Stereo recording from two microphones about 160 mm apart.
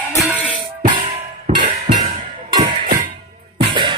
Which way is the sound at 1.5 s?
45° right (ahead or behind).